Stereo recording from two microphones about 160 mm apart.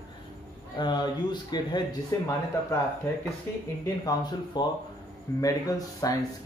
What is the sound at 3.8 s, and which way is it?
Speech, 25° left (ahead or behind).